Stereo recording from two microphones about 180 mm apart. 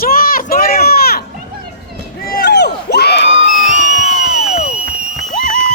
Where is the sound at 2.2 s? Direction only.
60° left (ahead or behind).